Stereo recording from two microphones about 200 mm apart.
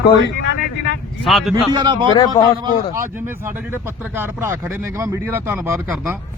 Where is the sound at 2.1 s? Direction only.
20° left (ahead or behind).